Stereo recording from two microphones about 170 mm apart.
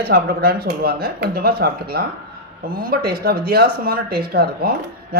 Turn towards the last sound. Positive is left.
turn(degrees=-65)  # may be behind; listen again after turning